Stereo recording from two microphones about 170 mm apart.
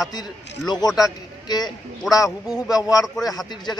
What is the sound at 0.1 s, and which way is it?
A man's voice, 25° left (ahead or behind).